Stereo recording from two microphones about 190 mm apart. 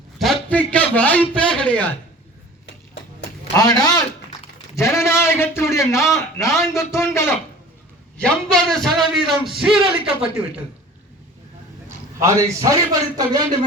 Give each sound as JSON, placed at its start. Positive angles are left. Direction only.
{"t": 0.4, "sound": "a man's voice", "side_deg": 5}
{"t": 3.6, "sound": "a man's voice", "side_deg": 20}
{"t": 8.2, "sound": "speech", "side_deg": 5}
{"t": 11.9, "sound": "a man's voice", "side_deg": -15}